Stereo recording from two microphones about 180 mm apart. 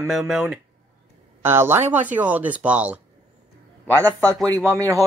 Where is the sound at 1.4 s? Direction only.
10° right (ahead or behind).